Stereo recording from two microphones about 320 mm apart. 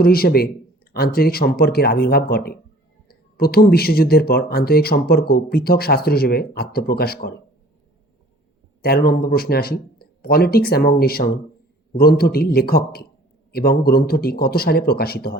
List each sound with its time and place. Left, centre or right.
0.0 s speech: left
8.8 s speech: left